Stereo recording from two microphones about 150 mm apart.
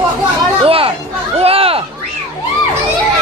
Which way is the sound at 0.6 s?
40° right (ahead or behind).